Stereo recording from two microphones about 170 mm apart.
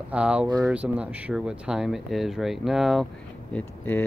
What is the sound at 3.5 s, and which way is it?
Speech, 10° left (ahead or behind).